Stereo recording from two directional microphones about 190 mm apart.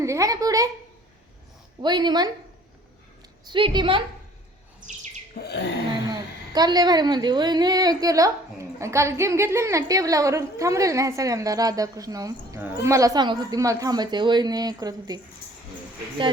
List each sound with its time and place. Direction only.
0.0 s a woman's voice: 15° right (ahead or behind)
1.8 s a woman's voice: 25° right (ahead or behind)
3.4 s a woman's voice: 25° right (ahead or behind)
5.4 s a sound: 60° left (ahead or behind)
6.1 s a woman's voice: 20° right (ahead or behind)